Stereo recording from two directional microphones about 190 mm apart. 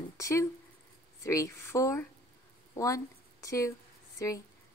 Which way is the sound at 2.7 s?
15° left (ahead or behind).